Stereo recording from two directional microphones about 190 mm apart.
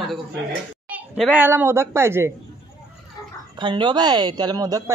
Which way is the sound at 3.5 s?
25° right (ahead or behind).